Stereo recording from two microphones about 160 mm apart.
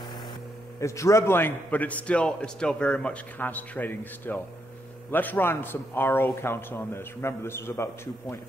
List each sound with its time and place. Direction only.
0.7 s a man's voice: 20° left (ahead or behind)